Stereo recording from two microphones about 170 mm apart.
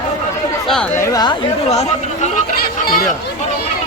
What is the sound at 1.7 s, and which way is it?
Speech, 40° left (ahead or behind).